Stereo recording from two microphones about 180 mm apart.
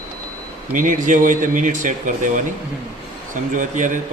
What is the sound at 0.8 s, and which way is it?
Speech, 45° right (ahead or behind).